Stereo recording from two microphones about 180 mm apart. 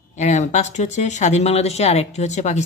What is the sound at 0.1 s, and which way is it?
Speech, 40° left (ahead or behind).